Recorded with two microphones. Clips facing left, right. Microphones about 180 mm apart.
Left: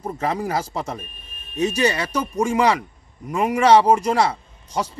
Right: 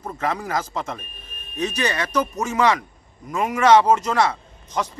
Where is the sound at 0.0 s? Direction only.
30° left (ahead or behind).